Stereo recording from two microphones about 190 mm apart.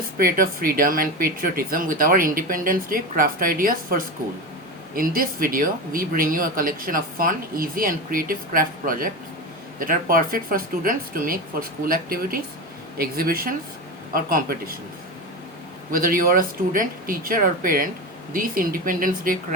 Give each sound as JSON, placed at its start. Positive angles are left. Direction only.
{"t": 0.2, "sound": "speech", "side_deg": -50}
{"t": 15.9, "sound": "speech", "side_deg": -50}